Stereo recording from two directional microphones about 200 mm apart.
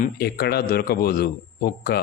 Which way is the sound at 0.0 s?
50° left (ahead or behind).